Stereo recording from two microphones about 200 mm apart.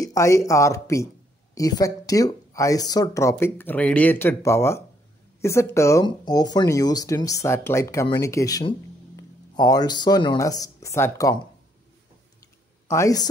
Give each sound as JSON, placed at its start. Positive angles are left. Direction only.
{"t": 0.0, "sound": "speech", "side_deg": 15}
{"t": 12.8, "sound": "speech", "side_deg": 15}